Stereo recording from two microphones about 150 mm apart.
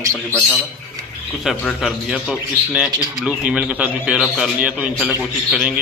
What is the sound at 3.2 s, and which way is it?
A man's voice, 5° right (ahead or behind).